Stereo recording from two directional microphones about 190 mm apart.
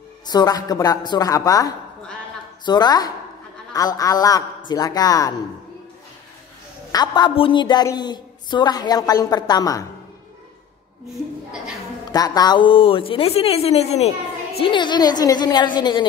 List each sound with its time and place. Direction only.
0.3 s speech: 20° left (ahead or behind)
6.9 s speech: 20° left (ahead or behind)
12.1 s speech: 20° left (ahead or behind)